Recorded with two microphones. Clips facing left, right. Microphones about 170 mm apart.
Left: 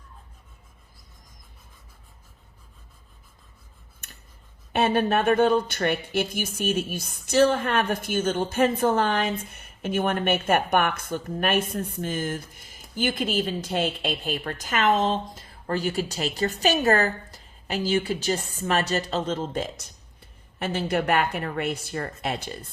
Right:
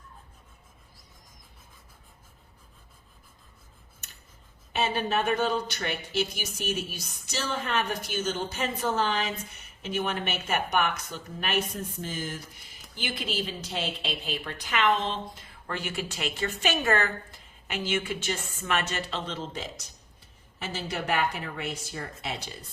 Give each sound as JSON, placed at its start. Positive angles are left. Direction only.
{"t": 4.7, "sound": "a woman's voice", "side_deg": 55}